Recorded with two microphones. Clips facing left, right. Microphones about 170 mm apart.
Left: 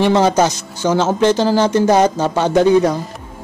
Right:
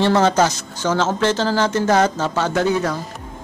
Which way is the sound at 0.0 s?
15° left (ahead or behind).